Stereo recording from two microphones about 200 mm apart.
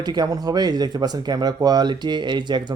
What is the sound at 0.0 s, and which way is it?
Speech, 20° right (ahead or behind).